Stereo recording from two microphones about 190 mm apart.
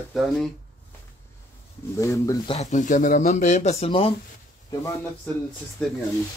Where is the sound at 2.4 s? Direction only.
35° left (ahead or behind).